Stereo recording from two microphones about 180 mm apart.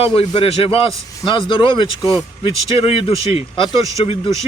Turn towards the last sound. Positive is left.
turn(degrees=30)  # may be behind; listen again after turning